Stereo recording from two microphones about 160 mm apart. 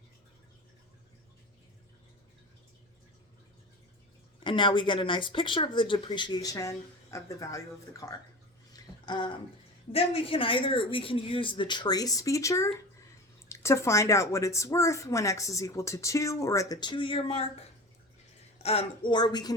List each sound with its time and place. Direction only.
4.4 s speech: 30° left (ahead or behind)
8.7 s a sound: 30° left (ahead or behind)
9.9 s speech: 35° left (ahead or behind)
18.6 s speech: 40° left (ahead or behind)